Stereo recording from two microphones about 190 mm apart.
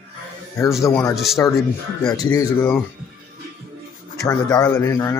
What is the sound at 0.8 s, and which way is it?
Speech, 15° left (ahead or behind).